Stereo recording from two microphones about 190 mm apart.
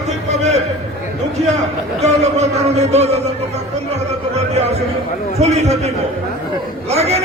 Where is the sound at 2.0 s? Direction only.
35° right (ahead or behind).